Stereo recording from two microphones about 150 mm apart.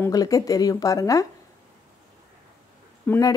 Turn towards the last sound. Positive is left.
turn(degrees=10)  # may be behind; listen again after turning